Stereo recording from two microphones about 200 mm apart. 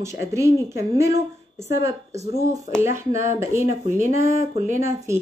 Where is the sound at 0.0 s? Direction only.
15° right (ahead or behind).